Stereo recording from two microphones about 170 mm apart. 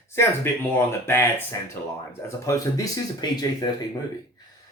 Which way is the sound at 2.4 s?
20° left (ahead or behind).